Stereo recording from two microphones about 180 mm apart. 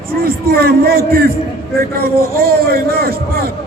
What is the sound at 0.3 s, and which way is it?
A man's voice, 60° right (ahead or behind).